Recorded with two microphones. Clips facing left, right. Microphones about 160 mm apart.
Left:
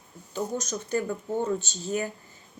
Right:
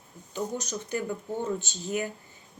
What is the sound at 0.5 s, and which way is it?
Speech, 15° right (ahead or behind).